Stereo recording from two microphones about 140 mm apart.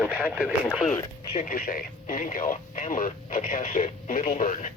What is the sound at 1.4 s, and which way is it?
Speech, 85° left.